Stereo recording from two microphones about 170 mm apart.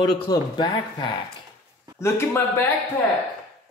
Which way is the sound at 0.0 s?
25° left (ahead or behind).